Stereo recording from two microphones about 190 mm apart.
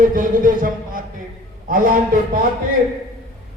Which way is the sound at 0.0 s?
45° right (ahead or behind).